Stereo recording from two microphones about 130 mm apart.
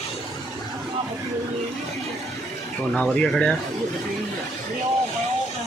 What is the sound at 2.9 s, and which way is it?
Speech, 5° left (ahead or behind).